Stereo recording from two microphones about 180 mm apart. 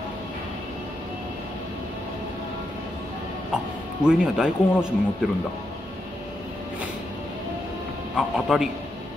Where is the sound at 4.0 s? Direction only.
5° right (ahead or behind).